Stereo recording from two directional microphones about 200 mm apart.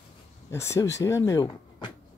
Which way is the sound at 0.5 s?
15° left (ahead or behind).